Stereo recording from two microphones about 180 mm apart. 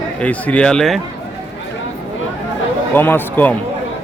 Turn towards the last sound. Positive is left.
turn(degrees=10)  # may be behind; listen again after turning